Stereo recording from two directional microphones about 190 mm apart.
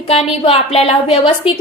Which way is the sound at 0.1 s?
30° left (ahead or behind).